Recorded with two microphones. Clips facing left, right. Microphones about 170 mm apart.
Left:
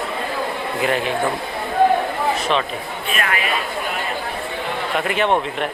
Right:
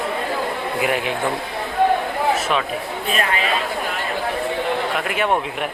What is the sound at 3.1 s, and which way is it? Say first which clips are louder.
Speech: right 1 dB; 25° right (ahead or behind).